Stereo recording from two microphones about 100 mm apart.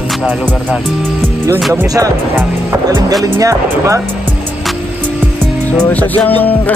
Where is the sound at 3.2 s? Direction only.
35° right (ahead or behind).